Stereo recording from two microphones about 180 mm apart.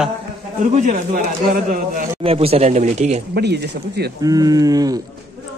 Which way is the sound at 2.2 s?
35° right (ahead or behind).